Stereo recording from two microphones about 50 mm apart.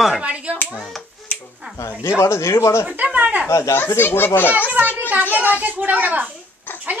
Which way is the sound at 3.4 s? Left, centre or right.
Left.